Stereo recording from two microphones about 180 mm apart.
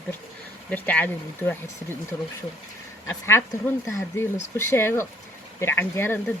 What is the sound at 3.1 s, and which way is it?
Speech, 10° left (ahead or behind).